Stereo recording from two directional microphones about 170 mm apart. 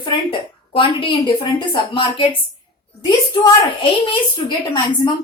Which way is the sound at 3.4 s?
30° left (ahead or behind).